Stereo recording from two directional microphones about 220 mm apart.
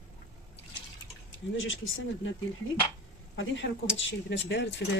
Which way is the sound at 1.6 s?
60° left (ahead or behind).